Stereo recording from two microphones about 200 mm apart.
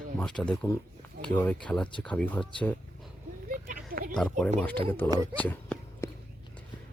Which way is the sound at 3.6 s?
45° right (ahead or behind).